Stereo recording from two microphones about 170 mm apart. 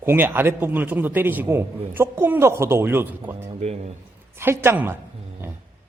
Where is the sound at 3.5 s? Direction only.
40° right (ahead or behind).